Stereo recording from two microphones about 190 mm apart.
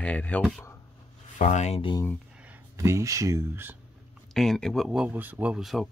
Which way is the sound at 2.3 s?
5° right (ahead or behind).